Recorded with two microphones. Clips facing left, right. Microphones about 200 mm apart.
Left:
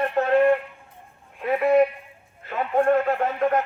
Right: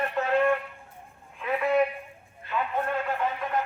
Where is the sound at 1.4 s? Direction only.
40° left (ahead or behind).